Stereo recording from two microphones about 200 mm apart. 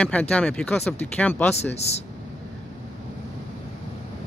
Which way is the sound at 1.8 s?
35° left (ahead or behind).